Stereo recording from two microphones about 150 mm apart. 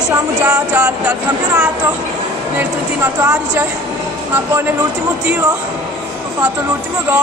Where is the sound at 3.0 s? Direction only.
15° right (ahead or behind).